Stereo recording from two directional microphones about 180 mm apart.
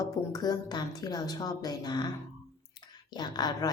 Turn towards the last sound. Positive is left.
turn(degrees=20)  # may be behind; listen again after turning